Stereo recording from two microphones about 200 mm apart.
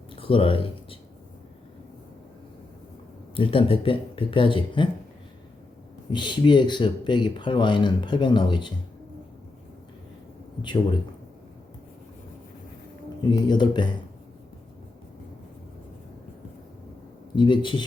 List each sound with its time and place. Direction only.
0.2 s speech: 25° left (ahead or behind)
3.3 s speech: 25° left (ahead or behind)
6.1 s speech: 20° left (ahead or behind)
13.3 s speech: 20° left (ahead or behind)
17.3 s speech: 25° left (ahead or behind)